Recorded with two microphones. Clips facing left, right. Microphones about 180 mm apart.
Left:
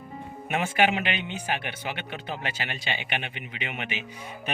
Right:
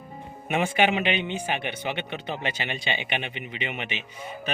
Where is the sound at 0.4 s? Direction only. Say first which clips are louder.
Right 1 dB; 5° left (ahead or behind).